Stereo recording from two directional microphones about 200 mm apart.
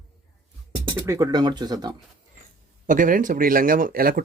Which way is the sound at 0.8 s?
20° right (ahead or behind).